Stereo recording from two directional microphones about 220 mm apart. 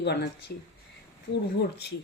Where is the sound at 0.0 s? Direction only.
50° left (ahead or behind).